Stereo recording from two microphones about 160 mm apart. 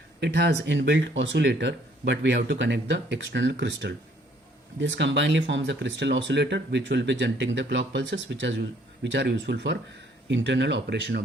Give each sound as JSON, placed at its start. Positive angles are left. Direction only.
{"t": 0.2, "sound": "speech", "side_deg": -90}